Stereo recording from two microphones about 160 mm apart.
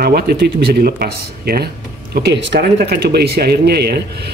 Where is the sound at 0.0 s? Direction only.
75° right (ahead or behind).